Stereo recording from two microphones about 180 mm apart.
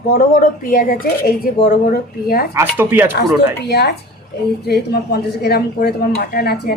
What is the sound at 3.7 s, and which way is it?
Speech, 65° left (ahead or behind).